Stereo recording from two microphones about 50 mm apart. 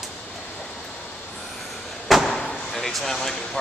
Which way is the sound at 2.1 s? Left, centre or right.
Centre.